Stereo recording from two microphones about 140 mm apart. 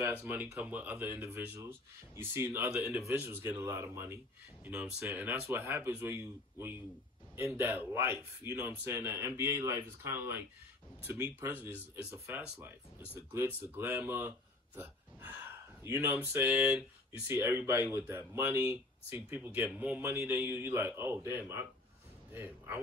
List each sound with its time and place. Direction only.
0.0 s speech: 15° right (ahead or behind)
4.6 s speech: 5° right (ahead or behind)
11.4 s speech: 15° right (ahead or behind)